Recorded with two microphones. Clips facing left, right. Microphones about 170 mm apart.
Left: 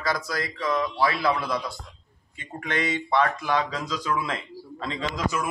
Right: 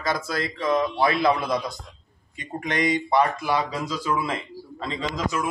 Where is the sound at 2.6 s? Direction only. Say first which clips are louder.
Right 4 dB; 15° right (ahead or behind).